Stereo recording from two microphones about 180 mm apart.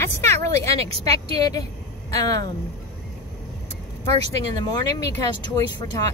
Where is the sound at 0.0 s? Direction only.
15° left (ahead or behind).